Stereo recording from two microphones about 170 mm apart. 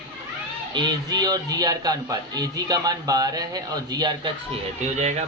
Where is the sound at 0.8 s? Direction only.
25° right (ahead or behind).